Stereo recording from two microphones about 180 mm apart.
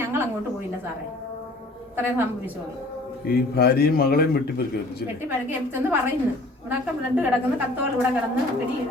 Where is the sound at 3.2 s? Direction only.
60° left (ahead or behind).